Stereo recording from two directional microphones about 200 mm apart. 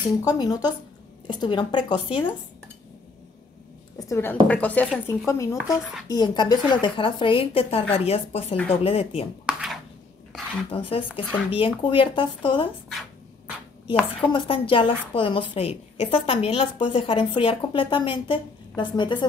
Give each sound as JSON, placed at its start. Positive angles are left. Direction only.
{"t": 0.2, "sound": "a woman's voice", "side_deg": 20}
{"t": 4.1, "sound": "a woman's voice", "side_deg": 10}
{"t": 9.5, "sound": "a sound", "side_deg": -5}
{"t": 10.7, "sound": "a woman's voice", "side_deg": 25}
{"t": 14.3, "sound": "a woman's voice", "side_deg": 25}